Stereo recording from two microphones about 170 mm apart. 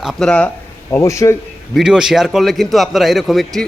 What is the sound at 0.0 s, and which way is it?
Speech, centre (ahead or behind).